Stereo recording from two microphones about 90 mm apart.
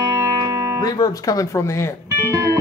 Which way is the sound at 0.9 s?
45° left (ahead or behind).